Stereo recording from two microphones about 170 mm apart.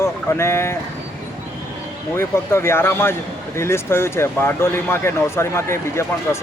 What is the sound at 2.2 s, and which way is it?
Speech, 15° left (ahead or behind).